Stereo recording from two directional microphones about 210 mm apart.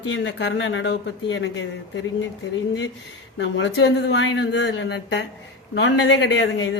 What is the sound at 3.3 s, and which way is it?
Speech, 60° left (ahead or behind).